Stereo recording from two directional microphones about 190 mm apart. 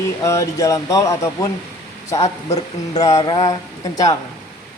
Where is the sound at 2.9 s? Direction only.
20° left (ahead or behind).